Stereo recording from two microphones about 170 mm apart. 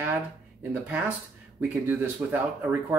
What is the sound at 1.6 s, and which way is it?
Speech, 10° right (ahead or behind).